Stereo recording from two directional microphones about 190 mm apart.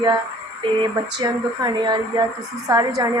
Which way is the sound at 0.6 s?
25° right (ahead or behind).